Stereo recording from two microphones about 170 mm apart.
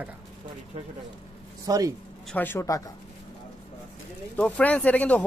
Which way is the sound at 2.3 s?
15° left (ahead or behind).